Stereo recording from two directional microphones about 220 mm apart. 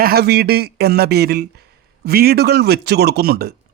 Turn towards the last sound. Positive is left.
turn(degrees=-45)  # may be behind; listen again after turning